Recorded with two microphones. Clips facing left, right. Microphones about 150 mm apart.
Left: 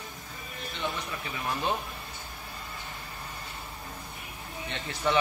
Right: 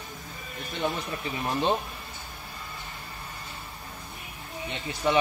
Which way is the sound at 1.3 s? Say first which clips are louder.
Right 4 dB; 30° right (ahead or behind).